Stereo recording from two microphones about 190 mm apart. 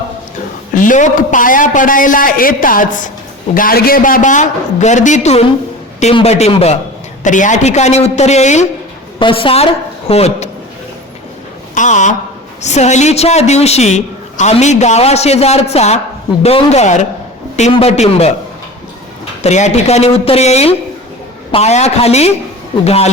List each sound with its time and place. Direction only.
0.8 s a man's voice: 40° left (ahead or behind)
11.7 s a man's voice: 40° left (ahead or behind)
19.4 s a man's voice: 35° left (ahead or behind)